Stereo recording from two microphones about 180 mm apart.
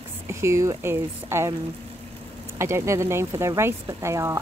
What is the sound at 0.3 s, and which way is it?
Speech, 15° right (ahead or behind).